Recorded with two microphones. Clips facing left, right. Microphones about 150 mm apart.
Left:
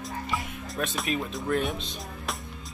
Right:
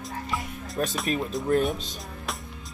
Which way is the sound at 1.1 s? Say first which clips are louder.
Right 4 dB; 40° right (ahead or behind).